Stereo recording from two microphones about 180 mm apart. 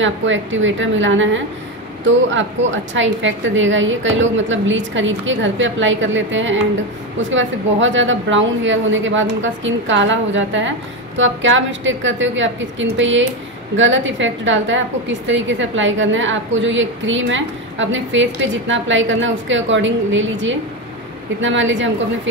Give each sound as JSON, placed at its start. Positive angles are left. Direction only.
{"t": 0.0, "sound": "a woman's voice", "side_deg": -90}